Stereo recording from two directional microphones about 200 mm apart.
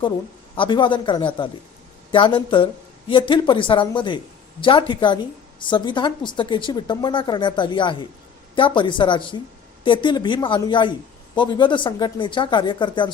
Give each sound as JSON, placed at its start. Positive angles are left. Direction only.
{"t": 0.5, "sound": "a woman's voice", "side_deg": 25}